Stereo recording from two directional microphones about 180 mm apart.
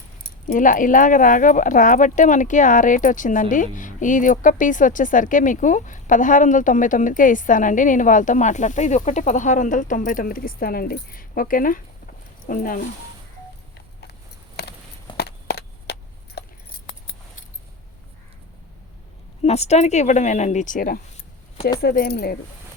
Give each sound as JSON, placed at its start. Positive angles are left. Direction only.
{"t": 0.4, "sound": "speech", "side_deg": 45}
{"t": 14.6, "sound": "a sound", "side_deg": 65}
{"t": 19.4, "sound": "speech", "side_deg": 35}